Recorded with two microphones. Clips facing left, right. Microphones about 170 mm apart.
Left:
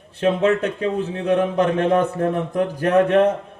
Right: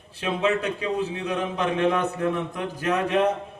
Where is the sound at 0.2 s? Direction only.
55° left (ahead or behind).